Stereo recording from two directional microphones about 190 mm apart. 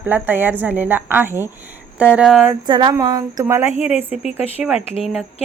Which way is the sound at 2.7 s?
25° right (ahead or behind).